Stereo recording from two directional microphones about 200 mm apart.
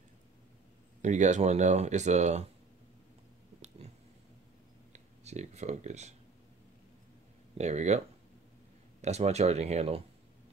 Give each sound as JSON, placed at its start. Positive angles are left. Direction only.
{"t": 1.0, "sound": "speech", "side_deg": -35}
{"t": 3.6, "sound": "a sound", "side_deg": -30}
{"t": 4.9, "sound": "speech", "side_deg": -35}
{"t": 7.5, "sound": "speech", "side_deg": -35}
{"t": 9.0, "sound": "speech", "side_deg": -35}